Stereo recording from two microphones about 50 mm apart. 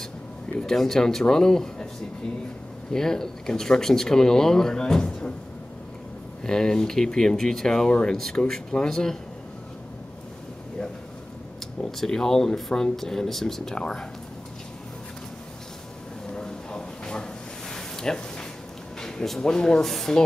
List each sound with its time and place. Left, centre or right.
0.6 s speech: centre
2.9 s speech: centre
6.4 s speech: centre
11.8 s speech: centre
16.3 s a sound: centre
19.5 s speech: centre